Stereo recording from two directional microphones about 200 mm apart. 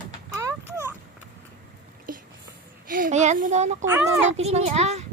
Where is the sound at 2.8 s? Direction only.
45° right (ahead or behind).